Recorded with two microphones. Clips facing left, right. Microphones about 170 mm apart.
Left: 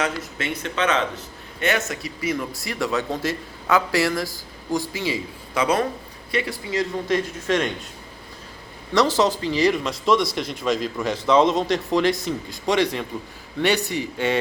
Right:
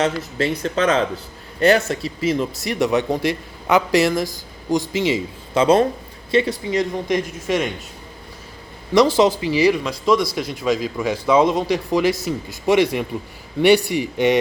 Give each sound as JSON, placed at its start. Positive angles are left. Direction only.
{"t": 0.0, "sound": "a man's voice", "side_deg": -35}
{"t": 8.9, "sound": "speech", "side_deg": -10}
{"t": 9.7, "sound": "speech", "side_deg": 0}